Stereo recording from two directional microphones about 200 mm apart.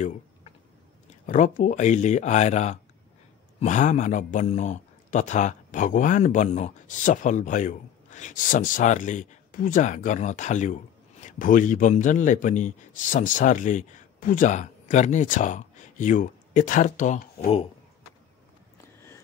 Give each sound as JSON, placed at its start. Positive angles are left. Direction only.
{"t": 1.2, "sound": "a man's voice", "side_deg": 40}